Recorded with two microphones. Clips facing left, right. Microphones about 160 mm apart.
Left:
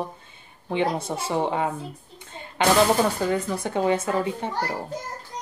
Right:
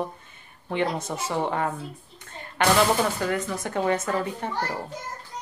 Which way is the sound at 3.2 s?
15° left (ahead or behind).